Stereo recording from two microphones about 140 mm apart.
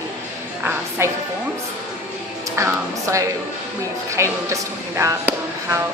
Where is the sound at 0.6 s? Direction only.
20° right (ahead or behind).